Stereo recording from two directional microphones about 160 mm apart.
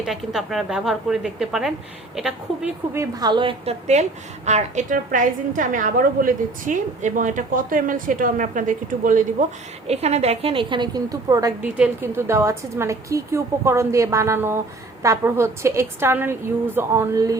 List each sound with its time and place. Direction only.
0.0 s a woman's voice: centre (ahead or behind)
2.9 s a woman's voice: 20° right (ahead or behind)
11.6 s a woman's voice: 10° right (ahead or behind)